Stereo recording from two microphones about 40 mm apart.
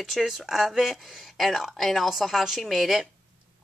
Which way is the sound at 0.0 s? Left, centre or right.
Centre.